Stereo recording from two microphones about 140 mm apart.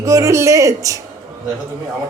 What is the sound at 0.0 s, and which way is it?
A woman's voice, 20° right (ahead or behind).